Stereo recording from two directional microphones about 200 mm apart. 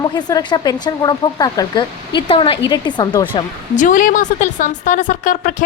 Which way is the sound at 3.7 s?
40° left (ahead or behind).